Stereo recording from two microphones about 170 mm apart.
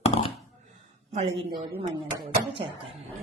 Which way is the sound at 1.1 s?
35° right (ahead or behind).